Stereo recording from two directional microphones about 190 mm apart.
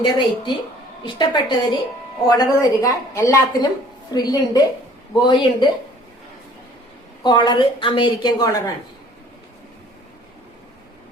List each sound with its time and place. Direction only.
0.0 s a woman's voice: 25° left (ahead or behind)
7.3 s a woman's voice: 20° left (ahead or behind)